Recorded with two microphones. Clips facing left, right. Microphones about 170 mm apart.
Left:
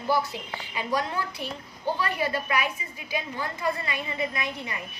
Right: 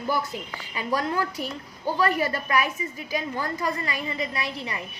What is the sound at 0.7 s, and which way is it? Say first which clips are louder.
A woman's voice: right 2 dB; 40° right (ahead or behind).